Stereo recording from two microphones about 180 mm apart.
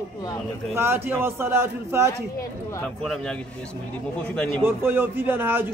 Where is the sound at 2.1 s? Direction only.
15° left (ahead or behind).